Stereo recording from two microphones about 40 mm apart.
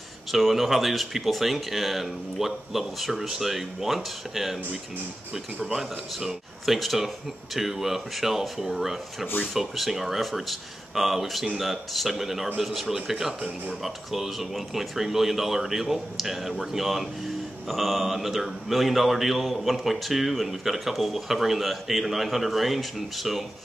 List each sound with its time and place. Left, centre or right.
0.3 s speech: centre
5.3 s speech: centre
5.8 s speech: centre